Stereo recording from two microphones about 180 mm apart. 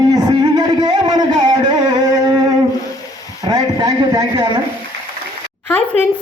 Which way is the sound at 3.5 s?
20° right (ahead or behind).